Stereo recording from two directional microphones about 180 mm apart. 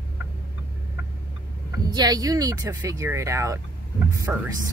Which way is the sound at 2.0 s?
20° right (ahead or behind).